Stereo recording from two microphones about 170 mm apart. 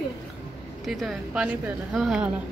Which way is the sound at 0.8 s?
Centre (ahead or behind).